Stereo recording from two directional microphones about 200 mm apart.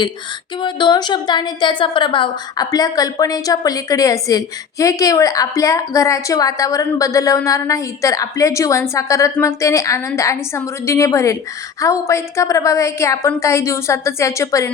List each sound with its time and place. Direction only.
0.6 s a woman's voice: 20° left (ahead or behind)